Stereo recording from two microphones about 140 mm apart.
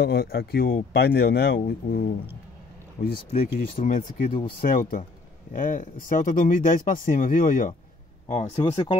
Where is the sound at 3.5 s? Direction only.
75° left (ahead or behind).